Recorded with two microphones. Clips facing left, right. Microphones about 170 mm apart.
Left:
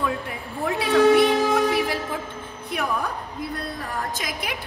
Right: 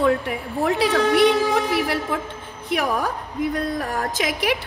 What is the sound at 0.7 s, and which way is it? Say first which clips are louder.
Speech: left 2 dB; 70° right (ahead or behind).